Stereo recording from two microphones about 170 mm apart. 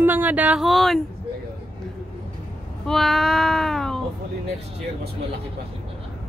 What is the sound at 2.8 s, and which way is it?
Speech, centre (ahead or behind).